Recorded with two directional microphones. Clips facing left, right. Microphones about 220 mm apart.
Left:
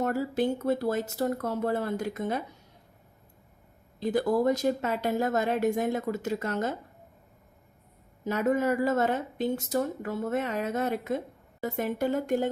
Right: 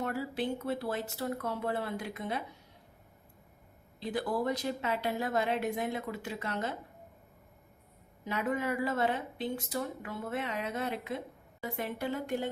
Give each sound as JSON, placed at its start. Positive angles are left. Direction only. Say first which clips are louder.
{"t": 0.0, "sound": "a woman's voice", "louder": "left 7 dB", "side_deg": 45}
{"t": 4.0, "sound": "a woman's voice", "louder": "left 8 dB", "side_deg": 45}
{"t": 8.2, "sound": "a woman's voice", "louder": "left 7 dB", "side_deg": 45}